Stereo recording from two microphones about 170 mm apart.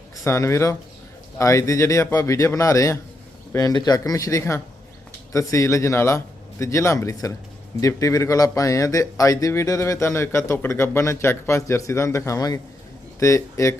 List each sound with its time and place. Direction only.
0.3 s speech: 15° left (ahead or behind)